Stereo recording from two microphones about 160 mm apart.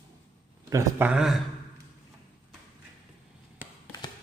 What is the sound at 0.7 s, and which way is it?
Speech, 15° right (ahead or behind).